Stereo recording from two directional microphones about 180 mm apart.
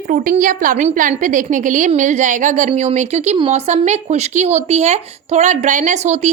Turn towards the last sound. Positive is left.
turn(degrees=-40)  # may be behind; listen again after turning